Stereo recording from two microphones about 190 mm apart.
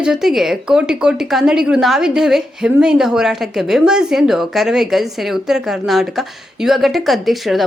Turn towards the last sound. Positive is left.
turn(degrees=0)  # may be behind; listen again after turning